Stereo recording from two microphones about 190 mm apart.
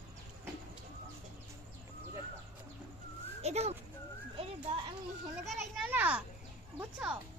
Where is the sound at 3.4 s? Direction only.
35° right (ahead or behind).